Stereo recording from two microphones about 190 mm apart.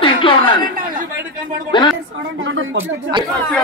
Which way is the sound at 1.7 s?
25° left (ahead or behind).